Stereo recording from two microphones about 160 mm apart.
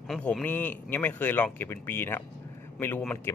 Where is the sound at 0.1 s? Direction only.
5° left (ahead or behind).